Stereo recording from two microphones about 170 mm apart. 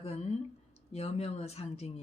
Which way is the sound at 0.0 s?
40° left (ahead or behind).